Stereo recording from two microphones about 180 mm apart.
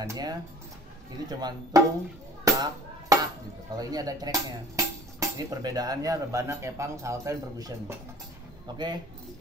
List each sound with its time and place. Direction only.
0.0 s speech: 20° right (ahead or behind)
2.4 s a sound: 20° right (ahead or behind)
3.7 s speech: 20° right (ahead or behind)